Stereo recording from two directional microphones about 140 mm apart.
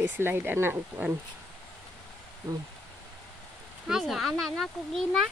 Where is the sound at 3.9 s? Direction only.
Centre (ahead or behind).